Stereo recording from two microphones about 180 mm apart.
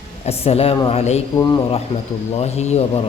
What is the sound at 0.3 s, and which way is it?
A man's voice, 35° left (ahead or behind).